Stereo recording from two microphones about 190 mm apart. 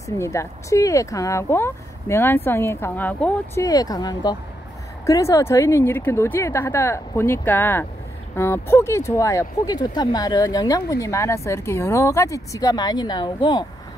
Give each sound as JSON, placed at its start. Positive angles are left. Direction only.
{"t": 0.0, "sound": "speech", "side_deg": 15}
{"t": 3.6, "sound": "speech", "side_deg": 20}